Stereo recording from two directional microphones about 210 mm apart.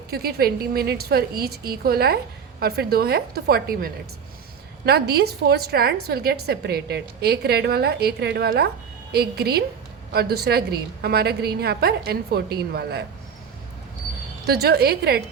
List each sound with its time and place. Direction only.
0.1 s a woman's voice: 50° right (ahead or behind)
14.4 s a woman's voice: 50° right (ahead or behind)